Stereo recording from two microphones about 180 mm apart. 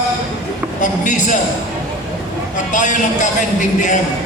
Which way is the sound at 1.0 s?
45° left (ahead or behind).